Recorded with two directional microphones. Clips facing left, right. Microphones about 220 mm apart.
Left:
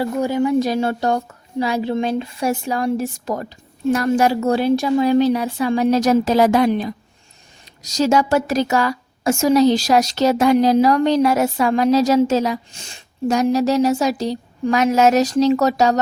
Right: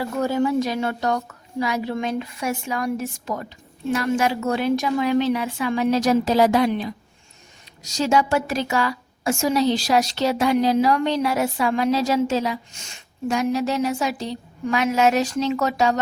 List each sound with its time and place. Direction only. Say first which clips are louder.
0.2 s speech: left 1 dB; 15° left (ahead or behind)
0.6 s a woman's voice: left 4 dB; 35° left (ahead or behind)